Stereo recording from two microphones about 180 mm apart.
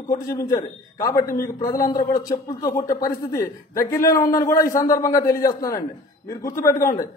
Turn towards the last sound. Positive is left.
turn(degrees=15)  # may be behind; listen again after turning